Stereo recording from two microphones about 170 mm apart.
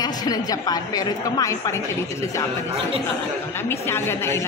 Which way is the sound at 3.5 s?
15° left (ahead or behind).